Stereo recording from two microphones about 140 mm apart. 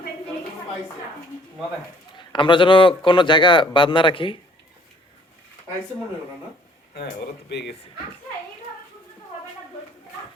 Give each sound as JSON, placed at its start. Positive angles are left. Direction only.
{"t": 2.1, "sound": "a man's voice", "side_deg": 35}